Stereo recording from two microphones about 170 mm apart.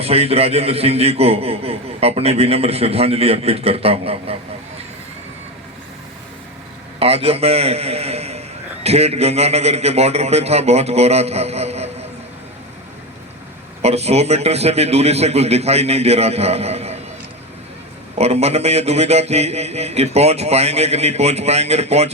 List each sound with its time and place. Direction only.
0.0 s a man's voice: 35° right (ahead or behind)
7.0 s a man's voice: 35° right (ahead or behind)
13.8 s a man's voice: 40° right (ahead or behind)
18.2 s a man's voice: 40° right (ahead or behind)